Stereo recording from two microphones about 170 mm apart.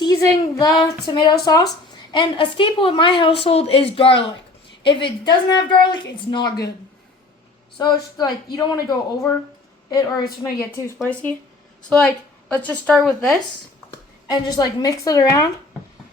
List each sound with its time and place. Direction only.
0.0 s a woman's voice: 20° left (ahead or behind)
7.8 s a woman's voice: 25° left (ahead or behind)
11.1 s a woman's voice: 10° left (ahead or behind)
14.3 s a woman's voice: 25° left (ahead or behind)